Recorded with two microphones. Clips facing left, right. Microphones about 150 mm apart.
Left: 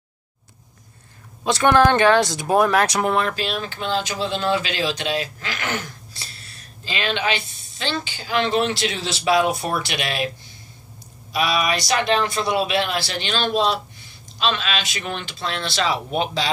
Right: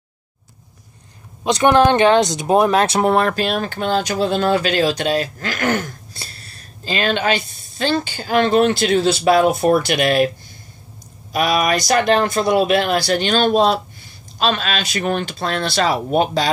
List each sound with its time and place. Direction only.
1.4 s speech: 20° right (ahead or behind)
3.2 s speech: 50° right (ahead or behind)
11.3 s speech: 50° right (ahead or behind)